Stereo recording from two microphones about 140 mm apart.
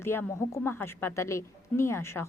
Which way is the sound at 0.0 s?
15° left (ahead or behind).